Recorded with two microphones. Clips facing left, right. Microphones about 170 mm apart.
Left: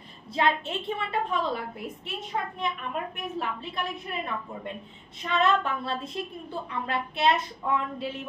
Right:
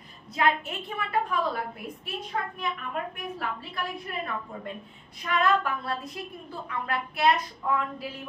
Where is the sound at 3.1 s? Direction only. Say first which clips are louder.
Left 2 dB; 20° left (ahead or behind).